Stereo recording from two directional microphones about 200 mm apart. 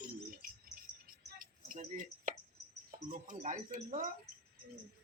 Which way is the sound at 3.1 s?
40° right (ahead or behind).